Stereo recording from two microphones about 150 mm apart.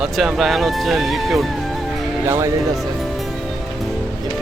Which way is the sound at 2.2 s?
15° right (ahead or behind).